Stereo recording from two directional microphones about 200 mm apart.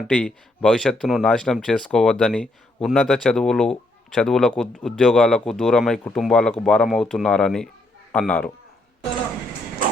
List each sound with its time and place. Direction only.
0.1 s speech: 5° left (ahead or behind)